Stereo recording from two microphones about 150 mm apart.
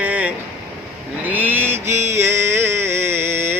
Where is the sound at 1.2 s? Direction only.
10° right (ahead or behind).